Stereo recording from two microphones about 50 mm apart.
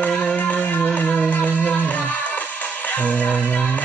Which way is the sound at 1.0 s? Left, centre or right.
Left.